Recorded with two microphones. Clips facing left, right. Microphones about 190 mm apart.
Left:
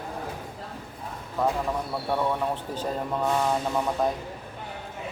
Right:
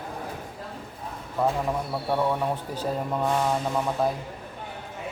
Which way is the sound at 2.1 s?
5° right (ahead or behind).